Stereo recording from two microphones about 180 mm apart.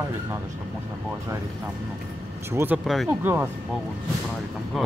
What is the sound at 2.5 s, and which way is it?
Speech, 10° right (ahead or behind).